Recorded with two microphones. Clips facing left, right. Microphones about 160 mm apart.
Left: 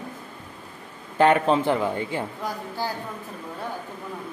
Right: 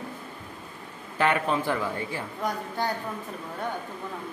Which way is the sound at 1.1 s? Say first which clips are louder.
Left 6 dB; 30° left (ahead or behind).